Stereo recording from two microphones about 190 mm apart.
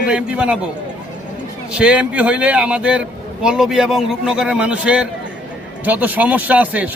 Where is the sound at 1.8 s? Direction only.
5° right (ahead or behind).